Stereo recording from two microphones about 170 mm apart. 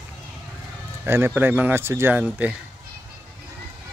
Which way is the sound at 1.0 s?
15° right (ahead or behind).